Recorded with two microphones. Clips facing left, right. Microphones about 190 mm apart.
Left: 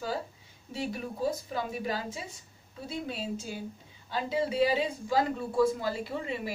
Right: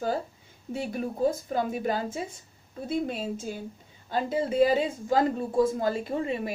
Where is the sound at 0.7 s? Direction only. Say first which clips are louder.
Right 4 dB; 50° right (ahead or behind).